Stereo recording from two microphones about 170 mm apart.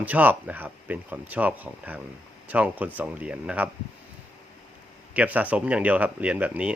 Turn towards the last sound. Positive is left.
turn(degrees=-10)  # may be behind; listen again after turning